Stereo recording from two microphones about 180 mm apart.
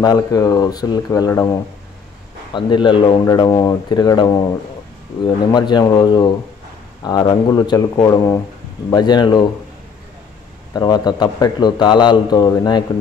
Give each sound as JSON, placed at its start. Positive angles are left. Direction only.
{"t": 0.0, "sound": "a man's voice", "side_deg": 20}
{"t": 2.5, "sound": "a man's voice", "side_deg": 25}
{"t": 10.7, "sound": "a man's voice", "side_deg": 20}